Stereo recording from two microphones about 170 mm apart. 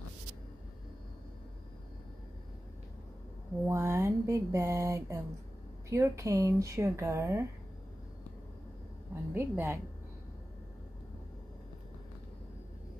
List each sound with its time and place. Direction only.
3.6 s a sound: 15° right (ahead or behind)
5.9 s speech: 15° right (ahead or behind)
9.3 s speech: 15° right (ahead or behind)